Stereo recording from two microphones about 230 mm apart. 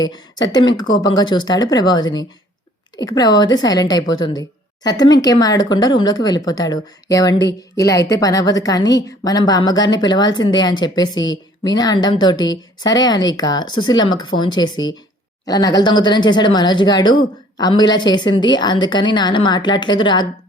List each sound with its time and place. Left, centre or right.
0.5 s a woman's voice: centre